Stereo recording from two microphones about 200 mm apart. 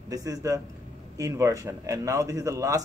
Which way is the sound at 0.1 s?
15° right (ahead or behind).